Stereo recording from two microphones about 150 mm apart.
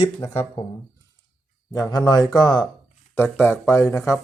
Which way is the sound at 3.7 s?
20° left (ahead or behind).